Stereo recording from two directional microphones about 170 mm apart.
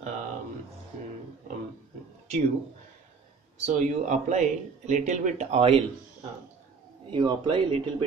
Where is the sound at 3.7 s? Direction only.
45° right (ahead or behind).